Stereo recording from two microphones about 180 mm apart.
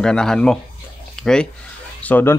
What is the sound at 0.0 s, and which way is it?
Speech, 5° left (ahead or behind).